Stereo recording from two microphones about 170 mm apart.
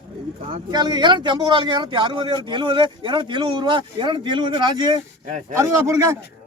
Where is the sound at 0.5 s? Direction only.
25° right (ahead or behind).